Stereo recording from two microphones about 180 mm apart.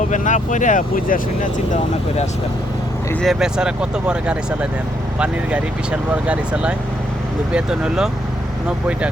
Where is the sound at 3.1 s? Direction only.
Centre (ahead or behind).